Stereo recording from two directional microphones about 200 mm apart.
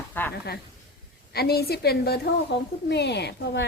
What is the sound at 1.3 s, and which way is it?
A woman's voice, 50° left (ahead or behind).